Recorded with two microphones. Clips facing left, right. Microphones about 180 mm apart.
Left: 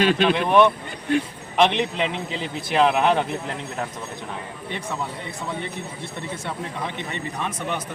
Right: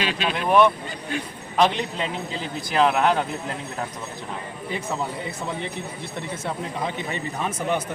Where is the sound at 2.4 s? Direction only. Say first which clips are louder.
Left 1 dB; centre (ahead or behind).